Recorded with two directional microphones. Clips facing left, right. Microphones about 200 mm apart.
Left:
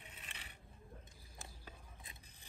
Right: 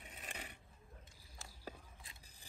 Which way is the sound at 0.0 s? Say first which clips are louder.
Right 6 dB; 40° right (ahead or behind).